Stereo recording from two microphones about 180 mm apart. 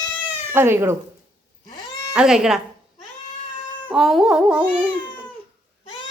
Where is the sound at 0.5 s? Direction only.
15° right (ahead or behind).